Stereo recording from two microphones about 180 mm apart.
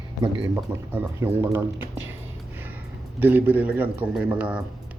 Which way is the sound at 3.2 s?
10° right (ahead or behind).